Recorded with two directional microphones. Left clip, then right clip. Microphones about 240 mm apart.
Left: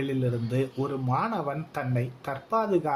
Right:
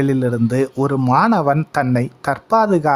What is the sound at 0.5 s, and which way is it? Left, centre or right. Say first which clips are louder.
Speech: right 11 dB; right.